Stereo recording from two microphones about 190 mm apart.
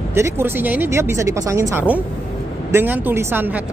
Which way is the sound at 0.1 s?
10° right (ahead or behind).